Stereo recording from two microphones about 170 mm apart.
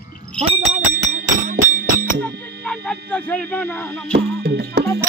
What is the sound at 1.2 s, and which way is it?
Music, 55° right (ahead or behind).